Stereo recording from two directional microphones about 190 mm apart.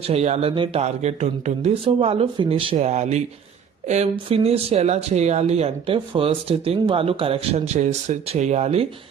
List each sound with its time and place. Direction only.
0.0 s speech: 35° right (ahead or behind)